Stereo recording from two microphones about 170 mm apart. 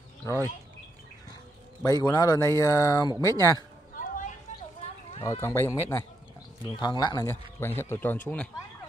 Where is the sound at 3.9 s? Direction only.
50° left (ahead or behind).